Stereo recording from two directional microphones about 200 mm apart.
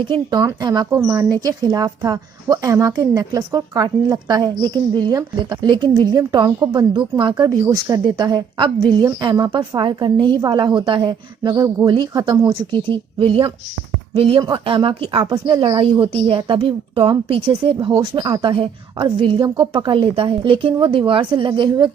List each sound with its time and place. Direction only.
0.1 s speech: 20° right (ahead or behind)